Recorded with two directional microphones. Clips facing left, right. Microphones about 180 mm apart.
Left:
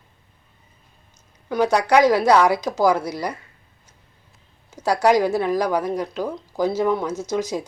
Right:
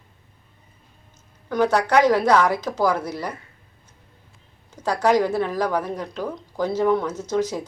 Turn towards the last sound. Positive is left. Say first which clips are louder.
# even
turn(degrees=10)  # may be behind; listen again after turning